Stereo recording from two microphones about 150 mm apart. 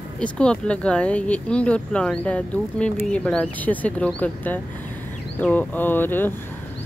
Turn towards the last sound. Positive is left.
turn(degrees=15)  # may be behind; listen again after turning